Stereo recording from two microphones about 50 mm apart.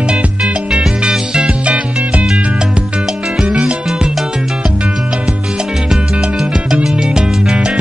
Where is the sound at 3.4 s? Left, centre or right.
Centre.